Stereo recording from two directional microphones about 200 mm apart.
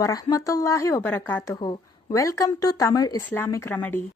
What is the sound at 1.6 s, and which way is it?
A woman's voice, 20° left (ahead or behind).